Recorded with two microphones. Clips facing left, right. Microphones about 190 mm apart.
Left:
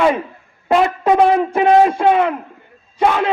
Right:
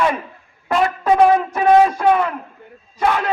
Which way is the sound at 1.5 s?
25° left (ahead or behind).